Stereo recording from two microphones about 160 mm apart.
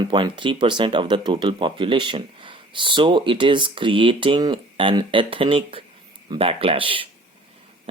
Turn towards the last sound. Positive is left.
turn(degrees=-35)  # may be behind; listen again after turning